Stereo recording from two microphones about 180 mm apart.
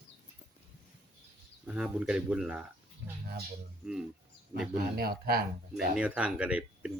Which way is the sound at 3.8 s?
5° right (ahead or behind).